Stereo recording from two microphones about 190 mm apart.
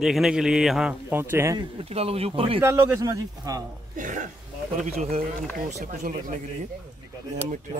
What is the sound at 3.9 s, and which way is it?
Speech, 45° right (ahead or behind).